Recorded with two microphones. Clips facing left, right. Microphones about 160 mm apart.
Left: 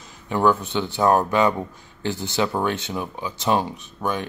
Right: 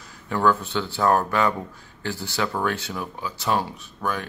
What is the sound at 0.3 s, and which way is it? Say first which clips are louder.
Speech: left 2 dB; 20° left (ahead or behind).